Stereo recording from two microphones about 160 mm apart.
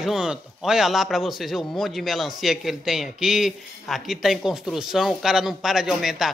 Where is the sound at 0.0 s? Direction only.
5° right (ahead or behind).